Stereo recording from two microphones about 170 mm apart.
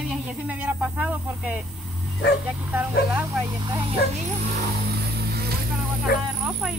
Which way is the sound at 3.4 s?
25° right (ahead or behind).